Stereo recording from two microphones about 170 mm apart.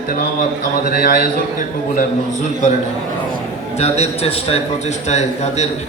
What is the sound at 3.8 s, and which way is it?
A man's voice, 35° left (ahead or behind).